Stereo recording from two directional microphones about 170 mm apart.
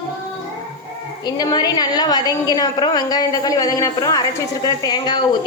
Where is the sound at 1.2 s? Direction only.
25° left (ahead or behind).